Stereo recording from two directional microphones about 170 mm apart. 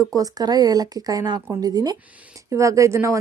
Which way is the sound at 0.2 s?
25° right (ahead or behind).